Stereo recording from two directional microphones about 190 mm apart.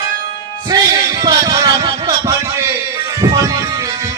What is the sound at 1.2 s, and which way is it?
Music, 20° right (ahead or behind).